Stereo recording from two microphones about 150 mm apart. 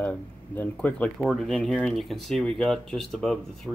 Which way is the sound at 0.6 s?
10° left (ahead or behind).